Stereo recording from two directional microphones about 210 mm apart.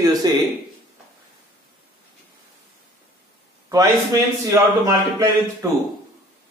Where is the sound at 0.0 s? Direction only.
15° right (ahead or behind).